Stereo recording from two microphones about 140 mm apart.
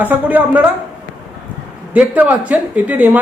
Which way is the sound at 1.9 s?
10° right (ahead or behind).